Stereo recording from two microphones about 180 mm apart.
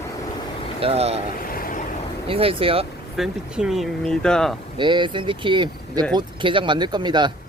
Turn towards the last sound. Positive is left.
turn(degrees=-25)  # may be behind; listen again after turning